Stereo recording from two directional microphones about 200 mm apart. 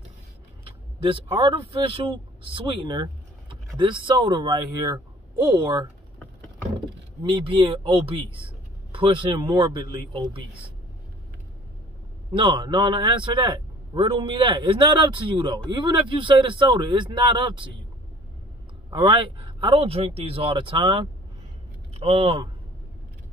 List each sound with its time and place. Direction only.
0.7 s speech: 25° right (ahead or behind)
7.2 s a man's voice: 25° right (ahead or behind)
12.3 s a man's voice: 25° right (ahead or behind)
18.9 s a man's voice: 25° right (ahead or behind)